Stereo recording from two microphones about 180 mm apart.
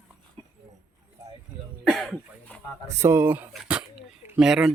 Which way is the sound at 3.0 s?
15° right (ahead or behind).